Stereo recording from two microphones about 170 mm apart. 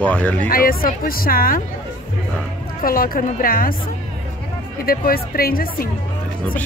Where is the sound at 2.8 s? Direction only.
55° left (ahead or behind).